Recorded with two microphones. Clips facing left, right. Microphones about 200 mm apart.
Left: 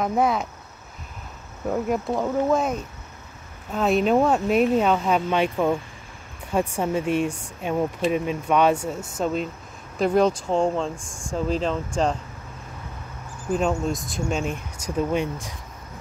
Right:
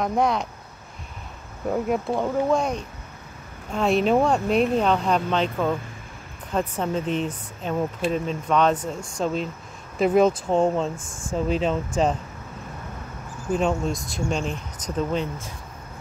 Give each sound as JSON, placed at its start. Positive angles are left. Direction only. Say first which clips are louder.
{"t": 0.0, "sound": "speech", "louder": "left 1 dB", "side_deg": 5}
{"t": 1.7, "sound": "speech", "louder": "even", "side_deg": 0}
{"t": 13.5, "sound": "speech", "louder": "even", "side_deg": 0}